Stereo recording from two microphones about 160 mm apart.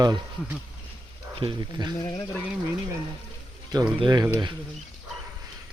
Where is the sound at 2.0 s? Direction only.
25° left (ahead or behind).